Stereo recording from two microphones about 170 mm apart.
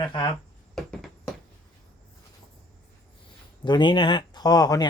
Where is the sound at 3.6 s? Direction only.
25° left (ahead or behind).